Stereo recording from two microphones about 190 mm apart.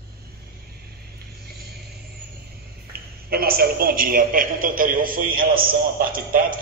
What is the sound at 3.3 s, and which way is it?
A man's voice, 50° right (ahead or behind).